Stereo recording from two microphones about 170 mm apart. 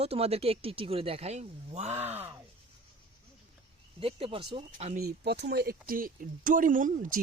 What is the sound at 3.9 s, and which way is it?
Speech, 35° right (ahead or behind).